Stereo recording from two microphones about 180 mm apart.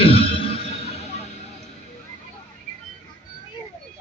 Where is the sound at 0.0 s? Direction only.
30° left (ahead or behind).